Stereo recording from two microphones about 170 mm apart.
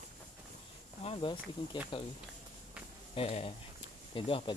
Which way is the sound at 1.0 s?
35° left (ahead or behind).